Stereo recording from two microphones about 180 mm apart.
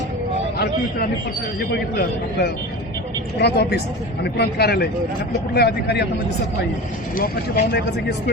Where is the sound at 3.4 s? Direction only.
65° left (ahead or behind).